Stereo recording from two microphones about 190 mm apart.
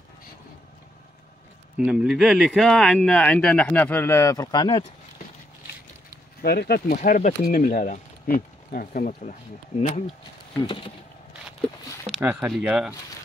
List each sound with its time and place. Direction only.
1.8 s speech: 5° right (ahead or behind); by 4.8 s 25° left (ahead or behind)
6.4 s speech: 55° left (ahead or behind)
7.0 s speech: 40° left (ahead or behind)
9.8 s speech: 35° left (ahead or behind)
12.1 s speech: 10° right (ahead or behind)